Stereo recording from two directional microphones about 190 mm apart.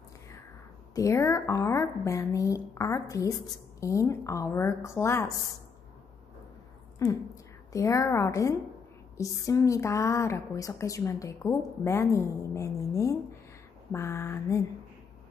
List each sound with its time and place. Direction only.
0.9 s a woman's voice: 15° left (ahead or behind)
7.0 s a woman's voice: 15° left (ahead or behind)